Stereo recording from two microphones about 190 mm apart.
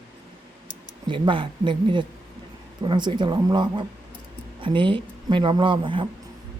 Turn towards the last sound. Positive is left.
turn(degrees=-25)  # may be behind; listen again after turning